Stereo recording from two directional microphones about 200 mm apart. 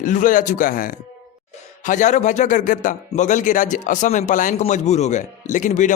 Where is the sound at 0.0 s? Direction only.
40° left (ahead or behind).